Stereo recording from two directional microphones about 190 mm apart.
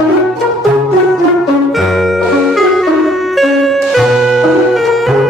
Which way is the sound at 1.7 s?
Centre (ahead or behind).